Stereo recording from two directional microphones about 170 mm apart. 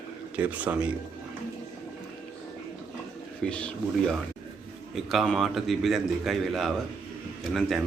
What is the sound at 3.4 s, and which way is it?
A man's voice, 5° left (ahead or behind).